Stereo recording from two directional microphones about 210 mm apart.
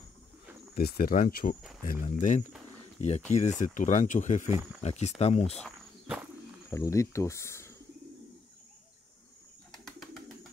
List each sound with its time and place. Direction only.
0.7 s speech: 45° left (ahead or behind)
5.6 s walk: 5° right (ahead or behind)
6.7 s speech: 15° left (ahead or behind)
9.7 s bird: centre (ahead or behind)